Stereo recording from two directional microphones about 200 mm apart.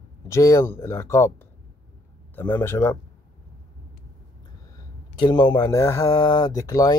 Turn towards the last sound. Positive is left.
turn(degrees=15)  # may be behind; listen again after turning